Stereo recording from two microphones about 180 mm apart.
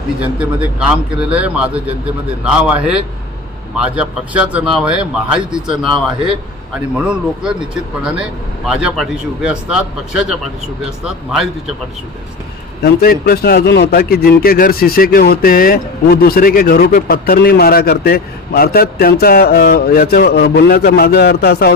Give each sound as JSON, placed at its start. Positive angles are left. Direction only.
{"t": 0.2, "sound": "a man's voice", "side_deg": -5}
{"t": 7.0, "sound": "speech", "side_deg": -5}
{"t": 12.8, "sound": "a man's voice", "side_deg": 60}